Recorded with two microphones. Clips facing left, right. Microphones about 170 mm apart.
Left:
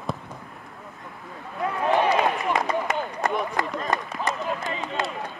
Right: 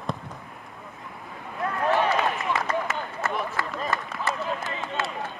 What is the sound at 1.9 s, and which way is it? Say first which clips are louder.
Run: left 5 dB; 15° left (ahead or behind).